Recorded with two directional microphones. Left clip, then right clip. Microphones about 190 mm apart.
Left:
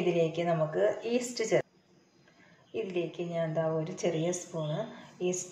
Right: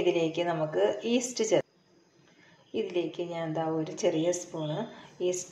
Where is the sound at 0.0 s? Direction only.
30° right (ahead or behind).